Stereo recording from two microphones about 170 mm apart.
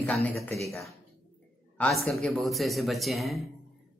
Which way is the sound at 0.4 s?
15° left (ahead or behind).